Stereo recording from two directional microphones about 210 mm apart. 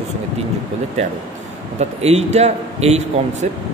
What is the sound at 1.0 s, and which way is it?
A man's voice, 30° right (ahead or behind).